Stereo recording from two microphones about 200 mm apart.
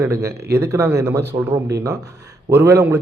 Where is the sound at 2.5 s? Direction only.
15° right (ahead or behind).